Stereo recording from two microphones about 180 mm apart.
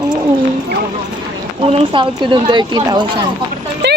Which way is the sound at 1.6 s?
30° right (ahead or behind).